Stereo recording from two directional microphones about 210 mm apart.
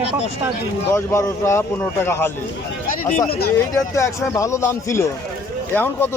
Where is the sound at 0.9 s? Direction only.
15° left (ahead or behind).